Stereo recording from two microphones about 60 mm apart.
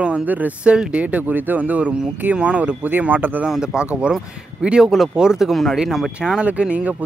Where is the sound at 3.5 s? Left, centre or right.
Centre.